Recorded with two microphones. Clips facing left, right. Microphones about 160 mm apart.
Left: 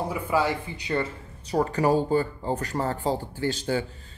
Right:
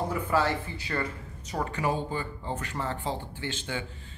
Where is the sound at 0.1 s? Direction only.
10° left (ahead or behind).